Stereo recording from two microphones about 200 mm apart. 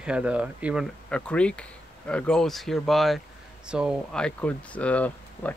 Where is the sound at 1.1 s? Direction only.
5° left (ahead or behind).